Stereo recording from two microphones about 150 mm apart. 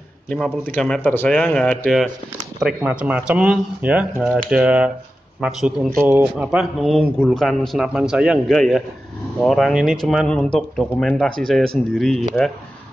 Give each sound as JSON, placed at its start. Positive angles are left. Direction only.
{"t": 0.3, "sound": "a man's voice", "side_deg": 10}
{"t": 2.6, "sound": "speech", "side_deg": -10}